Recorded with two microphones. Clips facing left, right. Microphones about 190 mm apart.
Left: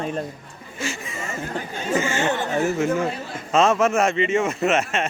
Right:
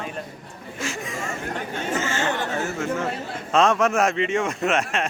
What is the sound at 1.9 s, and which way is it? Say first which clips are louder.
Speech: left 4 dB; 15° left (ahead or behind).